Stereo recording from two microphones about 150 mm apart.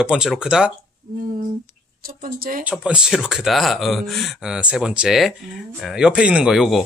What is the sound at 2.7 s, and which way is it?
Speech, 5° right (ahead or behind).